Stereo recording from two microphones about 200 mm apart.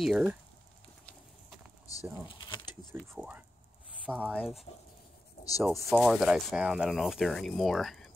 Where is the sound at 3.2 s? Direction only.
10° right (ahead or behind).